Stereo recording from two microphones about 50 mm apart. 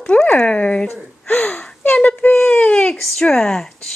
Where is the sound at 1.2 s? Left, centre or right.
Left.